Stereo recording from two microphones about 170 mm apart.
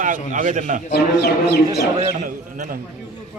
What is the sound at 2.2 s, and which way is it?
Speech, 50° right (ahead or behind).